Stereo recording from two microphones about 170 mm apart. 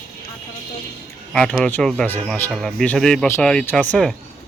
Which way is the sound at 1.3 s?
5° left (ahead or behind).